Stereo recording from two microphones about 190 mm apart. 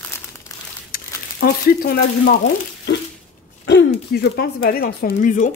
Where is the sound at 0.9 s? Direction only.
50° left (ahead or behind).